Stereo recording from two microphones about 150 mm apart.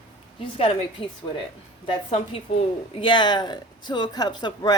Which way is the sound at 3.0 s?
30° left (ahead or behind).